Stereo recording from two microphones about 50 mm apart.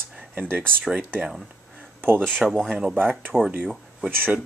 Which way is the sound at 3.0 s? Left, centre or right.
Right.